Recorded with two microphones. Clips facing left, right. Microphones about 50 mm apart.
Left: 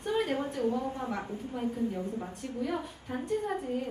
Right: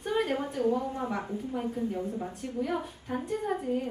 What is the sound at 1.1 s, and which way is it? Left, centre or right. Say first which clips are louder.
A woman's voice: right 2 dB; centre.